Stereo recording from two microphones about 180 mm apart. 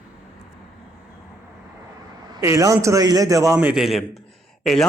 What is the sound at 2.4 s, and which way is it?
A man's voice, 15° right (ahead or behind).